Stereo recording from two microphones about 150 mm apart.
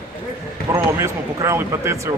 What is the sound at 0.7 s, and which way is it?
Speech, 20° right (ahead or behind).